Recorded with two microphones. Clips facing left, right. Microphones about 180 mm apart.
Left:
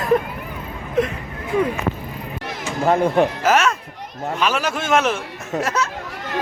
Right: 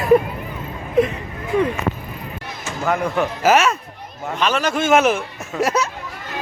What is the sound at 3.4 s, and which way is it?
Speech, 5° right (ahead or behind).